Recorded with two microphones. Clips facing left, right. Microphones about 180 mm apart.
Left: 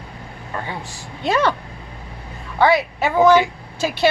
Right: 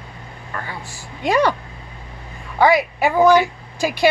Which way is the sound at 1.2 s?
10° right (ahead or behind).